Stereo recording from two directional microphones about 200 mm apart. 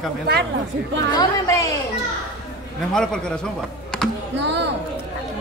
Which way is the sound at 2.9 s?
5° left (ahead or behind).